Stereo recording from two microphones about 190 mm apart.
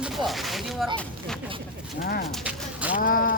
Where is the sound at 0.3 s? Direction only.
Centre (ahead or behind).